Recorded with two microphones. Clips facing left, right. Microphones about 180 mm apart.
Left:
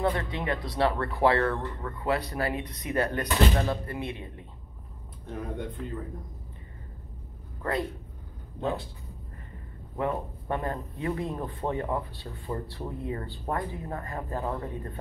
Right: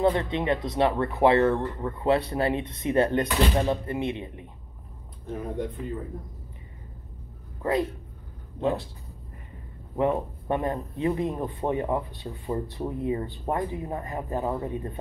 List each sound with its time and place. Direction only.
0.0 s speech: 20° right (ahead or behind)
5.2 s speech: centre (ahead or behind)
8.5 s speech: centre (ahead or behind)
9.9 s speech: 20° right (ahead or behind)